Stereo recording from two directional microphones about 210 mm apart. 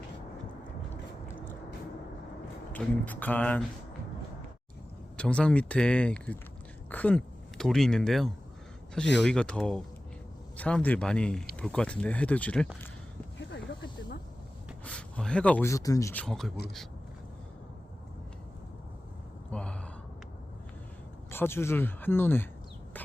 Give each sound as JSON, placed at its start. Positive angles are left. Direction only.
{"t": 2.7, "sound": "speech", "side_deg": 5}
{"t": 5.1, "sound": "speech", "side_deg": 5}
{"t": 14.8, "sound": "speech", "side_deg": 5}
{"t": 16.2, "sound": "speech", "side_deg": 0}
{"t": 19.5, "sound": "gasp", "side_deg": 5}
{"t": 21.2, "sound": "speech", "side_deg": 10}